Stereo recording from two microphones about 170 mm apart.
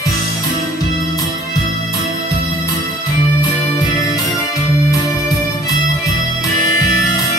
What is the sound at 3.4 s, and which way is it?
Music, 20° left (ahead or behind).